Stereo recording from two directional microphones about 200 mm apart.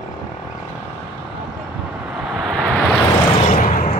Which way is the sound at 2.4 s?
Centre (ahead or behind).